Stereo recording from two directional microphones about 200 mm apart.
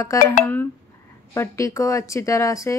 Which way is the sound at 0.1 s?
15° left (ahead or behind).